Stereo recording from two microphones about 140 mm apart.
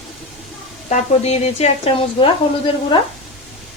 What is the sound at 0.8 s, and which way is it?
Speech, 55° left (ahead or behind).